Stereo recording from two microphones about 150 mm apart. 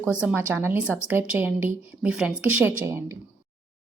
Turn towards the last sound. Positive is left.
turn(degrees=-20)  # may be behind; listen again after turning